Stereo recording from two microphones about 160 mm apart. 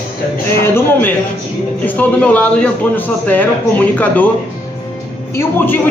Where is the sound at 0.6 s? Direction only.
15° left (ahead or behind).